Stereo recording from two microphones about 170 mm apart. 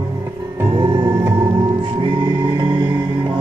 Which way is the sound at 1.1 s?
15° right (ahead or behind).